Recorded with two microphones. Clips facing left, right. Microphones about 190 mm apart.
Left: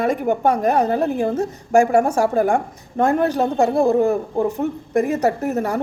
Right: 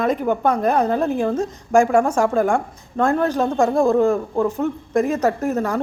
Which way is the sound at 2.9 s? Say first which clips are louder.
Left 1 dB; 15° left (ahead or behind).